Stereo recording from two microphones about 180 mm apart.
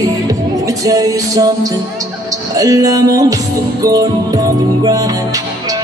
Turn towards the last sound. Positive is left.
turn(degrees=-20)  # may be behind; listen again after turning